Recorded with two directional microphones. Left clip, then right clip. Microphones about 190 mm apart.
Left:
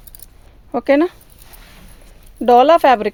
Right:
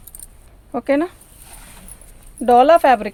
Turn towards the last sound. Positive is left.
turn(degrees=55)  # may be behind; listen again after turning